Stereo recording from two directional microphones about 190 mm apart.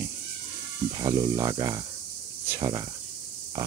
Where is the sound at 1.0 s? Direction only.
20° right (ahead or behind).